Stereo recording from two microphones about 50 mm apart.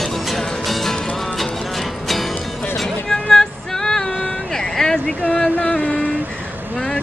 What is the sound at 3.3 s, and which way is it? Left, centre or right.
Female singing, centre.